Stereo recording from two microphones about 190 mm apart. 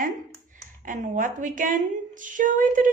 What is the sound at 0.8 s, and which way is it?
A woman's voice, 45° right (ahead or behind).